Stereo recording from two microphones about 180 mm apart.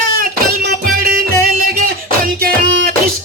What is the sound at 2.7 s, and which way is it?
Music, 90° right.